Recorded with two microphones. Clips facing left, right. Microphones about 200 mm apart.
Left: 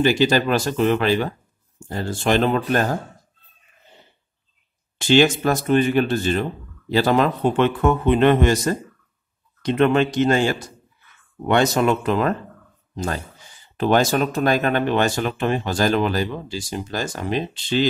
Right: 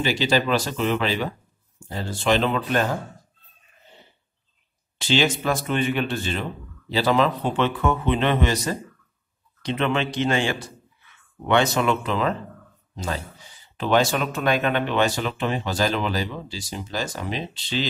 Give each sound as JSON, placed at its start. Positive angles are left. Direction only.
{"t": 0.0, "sound": "speech", "side_deg": 45}
{"t": 4.9, "sound": "speech", "side_deg": 50}